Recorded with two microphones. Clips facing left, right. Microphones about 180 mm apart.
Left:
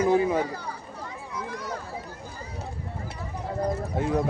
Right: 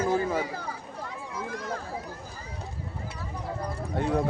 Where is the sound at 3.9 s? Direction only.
Centre (ahead or behind).